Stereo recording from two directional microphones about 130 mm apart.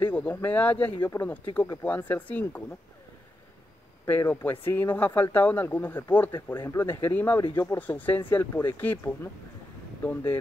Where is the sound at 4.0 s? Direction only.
15° left (ahead or behind).